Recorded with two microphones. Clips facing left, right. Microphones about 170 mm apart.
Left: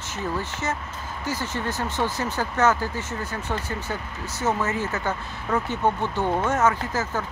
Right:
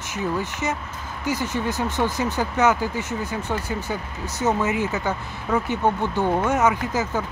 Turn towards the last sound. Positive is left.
turn(degrees=-15)  # may be behind; listen again after turning